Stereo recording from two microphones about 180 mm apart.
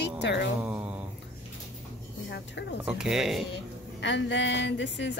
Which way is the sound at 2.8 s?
5° right (ahead or behind).